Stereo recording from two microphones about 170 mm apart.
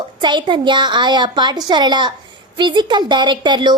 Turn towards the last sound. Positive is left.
turn(degrees=-25)  # may be behind; listen again after turning